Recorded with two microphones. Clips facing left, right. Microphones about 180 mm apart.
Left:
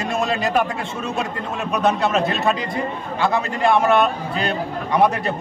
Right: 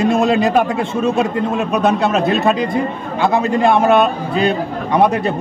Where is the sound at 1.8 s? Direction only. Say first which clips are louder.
Right 2 dB; 15° right (ahead or behind).